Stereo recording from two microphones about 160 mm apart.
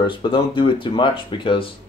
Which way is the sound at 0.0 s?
30° left (ahead or behind).